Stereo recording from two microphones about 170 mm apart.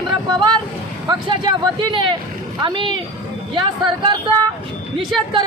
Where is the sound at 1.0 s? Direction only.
25° right (ahead or behind).